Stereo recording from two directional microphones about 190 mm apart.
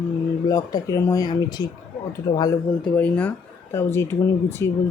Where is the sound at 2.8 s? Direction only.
5° left (ahead or behind).